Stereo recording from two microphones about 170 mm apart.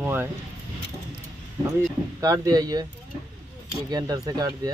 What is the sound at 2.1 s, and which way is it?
Speech, 20° right (ahead or behind).